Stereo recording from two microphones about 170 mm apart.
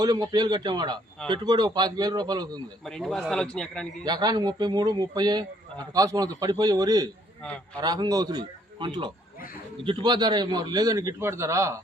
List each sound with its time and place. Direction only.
0.0 s a man's voice: 25° right (ahead or behind)
2.8 s a man's voice: centre (ahead or behind)
4.0 s a man's voice: 25° right (ahead or behind)
7.4 s a man's voice: 5° left (ahead or behind)
7.8 s a man's voice: 25° right (ahead or behind)